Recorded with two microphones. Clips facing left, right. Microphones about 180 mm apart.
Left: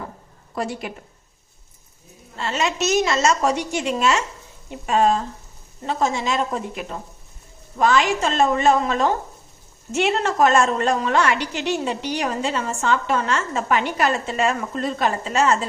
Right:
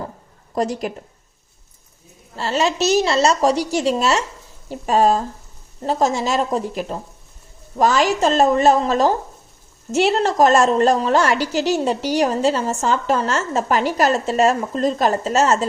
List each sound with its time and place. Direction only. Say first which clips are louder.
0.5 s a woman's voice: right 5 dB; 40° right (ahead or behind)
2.3 s a woman's voice: right 4 dB; 35° right (ahead or behind)